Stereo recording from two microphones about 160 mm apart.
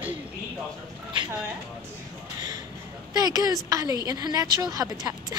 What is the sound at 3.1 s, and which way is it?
Speech, 25° right (ahead or behind).